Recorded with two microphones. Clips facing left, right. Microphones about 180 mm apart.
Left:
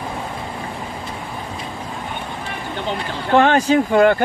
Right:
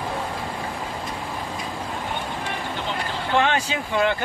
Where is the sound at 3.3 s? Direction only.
45° left (ahead or behind).